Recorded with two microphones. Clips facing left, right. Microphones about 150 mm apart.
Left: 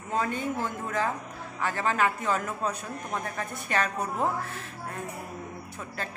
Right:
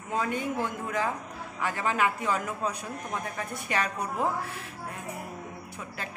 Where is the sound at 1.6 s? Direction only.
10° right (ahead or behind).